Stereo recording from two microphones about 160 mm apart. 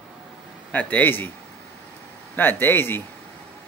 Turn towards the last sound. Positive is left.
turn(degrees=15)  # may be behind; listen again after turning